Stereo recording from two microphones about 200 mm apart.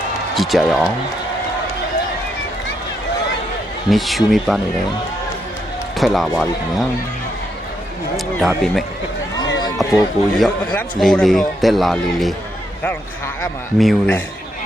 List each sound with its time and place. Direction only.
0.3 s a man's voice: centre (ahead or behind)
3.8 s a man's voice: centre (ahead or behind)
6.0 s a man's voice: centre (ahead or behind)
9.6 s run: 20° left (ahead or behind)
9.9 s a man's voice: centre (ahead or behind)
12.8 s a man's voice: 10° left (ahead or behind)
13.7 s a man's voice: centre (ahead or behind)